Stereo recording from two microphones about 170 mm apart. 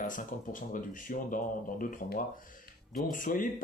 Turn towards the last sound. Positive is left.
turn(degrees=50)  # may be behind; listen again after turning